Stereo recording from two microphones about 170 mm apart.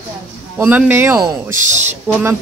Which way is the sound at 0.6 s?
10° right (ahead or behind).